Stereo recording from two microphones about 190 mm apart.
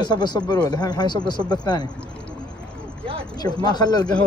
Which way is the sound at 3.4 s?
20° left (ahead or behind).